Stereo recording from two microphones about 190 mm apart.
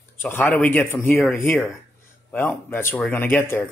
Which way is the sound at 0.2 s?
10° left (ahead or behind).